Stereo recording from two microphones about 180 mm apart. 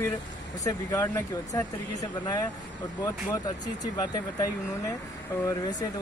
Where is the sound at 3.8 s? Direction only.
20° left (ahead or behind).